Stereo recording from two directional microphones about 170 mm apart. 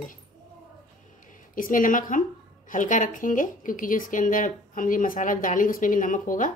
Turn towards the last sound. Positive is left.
turn(degrees=50)  # may be behind; listen again after turning